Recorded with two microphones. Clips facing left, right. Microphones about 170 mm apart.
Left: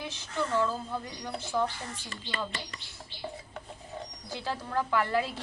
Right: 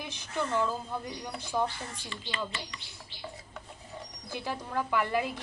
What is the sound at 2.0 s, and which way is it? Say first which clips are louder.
Speech: even; 45° left (ahead or behind).